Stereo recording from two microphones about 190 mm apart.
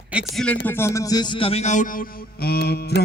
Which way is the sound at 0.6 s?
15° left (ahead or behind).